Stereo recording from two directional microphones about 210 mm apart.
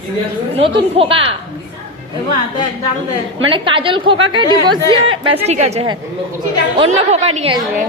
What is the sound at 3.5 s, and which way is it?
A woman's voice, 25° right (ahead or behind).